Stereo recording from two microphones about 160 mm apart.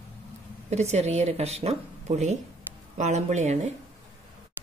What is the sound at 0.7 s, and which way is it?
Speech, 45° right (ahead or behind).